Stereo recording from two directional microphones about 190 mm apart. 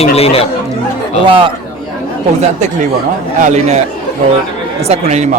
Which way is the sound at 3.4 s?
35° right (ahead or behind).